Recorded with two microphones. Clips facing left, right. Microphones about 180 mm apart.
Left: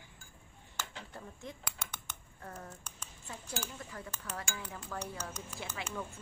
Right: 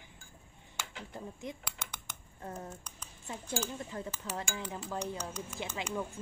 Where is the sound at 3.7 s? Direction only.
25° right (ahead or behind).